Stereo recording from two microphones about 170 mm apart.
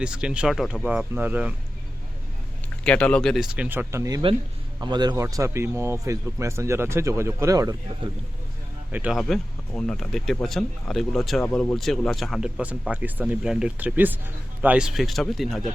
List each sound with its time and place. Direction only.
0.0 s speech: 5° right (ahead or behind)
2.8 s speech: 5° left (ahead or behind); by 7.8 s 20° right (ahead or behind)
8.9 s speech: 10° right (ahead or behind)
9.2 s speech: 5° left (ahead or behind)